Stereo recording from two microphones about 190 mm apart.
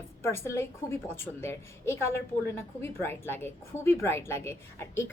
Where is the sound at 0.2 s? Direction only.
15° left (ahead or behind).